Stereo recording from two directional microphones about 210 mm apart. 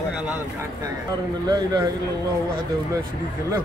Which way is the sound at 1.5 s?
20° right (ahead or behind).